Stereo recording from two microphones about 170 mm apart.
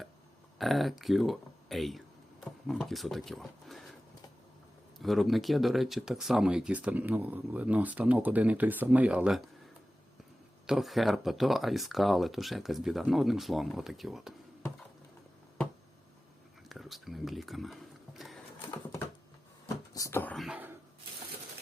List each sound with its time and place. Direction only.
0.6 s speech: centre (ahead or behind)
4.9 s speech: centre (ahead or behind)
10.7 s speech: centre (ahead or behind)
16.6 s a sound: centre (ahead or behind)
19.6 s a sound: 20° left (ahead or behind)
20.3 s speech: centre (ahead or behind)